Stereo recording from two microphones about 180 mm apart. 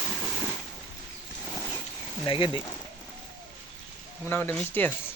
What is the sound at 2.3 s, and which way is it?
Speech, 25° left (ahead or behind).